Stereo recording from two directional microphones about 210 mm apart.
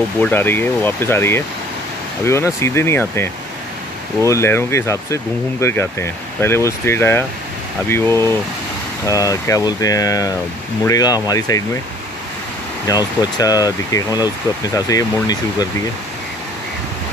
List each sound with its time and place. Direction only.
0.2 s speech: 10° left (ahead or behind)
12.8 s speech: 15° left (ahead or behind)